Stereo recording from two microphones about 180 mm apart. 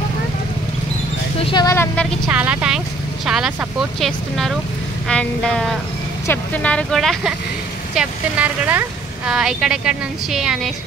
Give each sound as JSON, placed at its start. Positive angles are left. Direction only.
{"t": 1.4, "sound": "speech", "side_deg": 25}
{"t": 2.2, "sound": "speech", "side_deg": -10}